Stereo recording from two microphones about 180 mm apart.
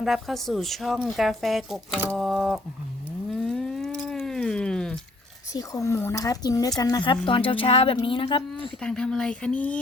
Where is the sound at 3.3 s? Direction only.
Centre (ahead or behind).